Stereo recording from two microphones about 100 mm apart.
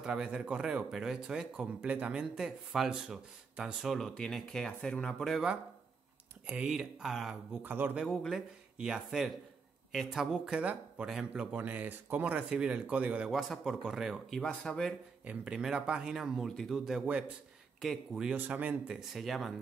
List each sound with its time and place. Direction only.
0.0 s speech: 5° right (ahead or behind)
6.4 s speech: 10° right (ahead or behind)
7.6 s speech: 15° right (ahead or behind)
8.1 s speech: centre (ahead or behind)
13.3 s speech: centre (ahead or behind)
14.4 s speech: 10° left (ahead or behind)
15.2 s speech: 10° right (ahead or behind)
18.9 s speech: centre (ahead or behind)